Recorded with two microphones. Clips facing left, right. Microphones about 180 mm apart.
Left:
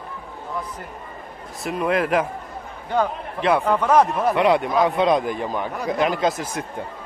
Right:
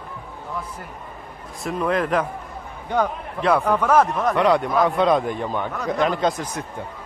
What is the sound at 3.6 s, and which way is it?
A man's voice, 10° left (ahead or behind).